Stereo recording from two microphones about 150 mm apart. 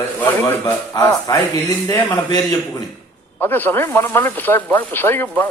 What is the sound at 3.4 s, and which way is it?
Speech, 15° left (ahead or behind).